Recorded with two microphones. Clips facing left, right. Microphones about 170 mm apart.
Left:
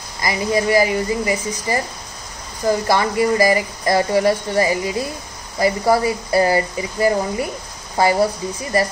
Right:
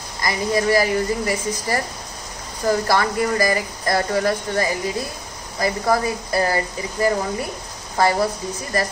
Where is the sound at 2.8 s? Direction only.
20° left (ahead or behind).